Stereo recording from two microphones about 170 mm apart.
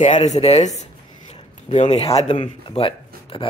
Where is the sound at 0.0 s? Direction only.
45° left (ahead or behind).